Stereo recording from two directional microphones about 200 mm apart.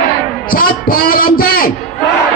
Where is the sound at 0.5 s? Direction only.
45° left (ahead or behind).